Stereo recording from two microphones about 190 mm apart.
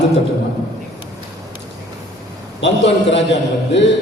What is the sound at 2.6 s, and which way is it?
Speech, 70° left (ahead or behind).